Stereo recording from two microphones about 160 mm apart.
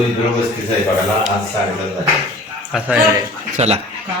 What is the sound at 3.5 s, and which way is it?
Speech, 40° right (ahead or behind).